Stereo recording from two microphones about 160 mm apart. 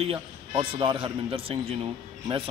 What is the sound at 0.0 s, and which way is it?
A man's voice, 35° right (ahead or behind).